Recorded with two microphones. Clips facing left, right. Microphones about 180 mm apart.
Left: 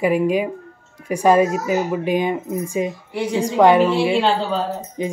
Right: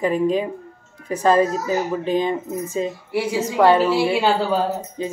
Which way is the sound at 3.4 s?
15° left (ahead or behind).